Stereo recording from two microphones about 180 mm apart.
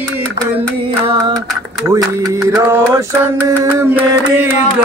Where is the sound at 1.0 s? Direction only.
30° right (ahead or behind).